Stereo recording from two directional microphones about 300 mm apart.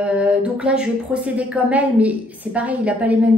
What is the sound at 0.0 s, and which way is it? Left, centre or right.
A woman's voice, centre.